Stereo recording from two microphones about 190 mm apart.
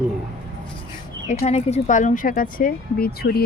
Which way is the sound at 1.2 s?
35° left (ahead or behind).